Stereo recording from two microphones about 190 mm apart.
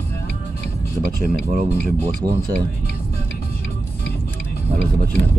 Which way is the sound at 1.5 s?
50° right (ahead or behind).